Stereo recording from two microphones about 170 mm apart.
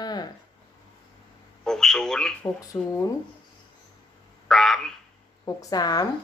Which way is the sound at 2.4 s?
15° left (ahead or behind).